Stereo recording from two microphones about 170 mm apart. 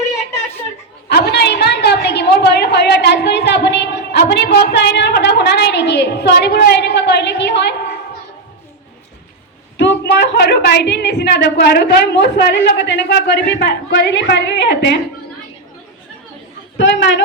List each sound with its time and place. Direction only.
1.0 s a sound: 70° left (ahead or behind)
9.7 s a woman's voice: 90° left
16.7 s a woman's voice: 90° left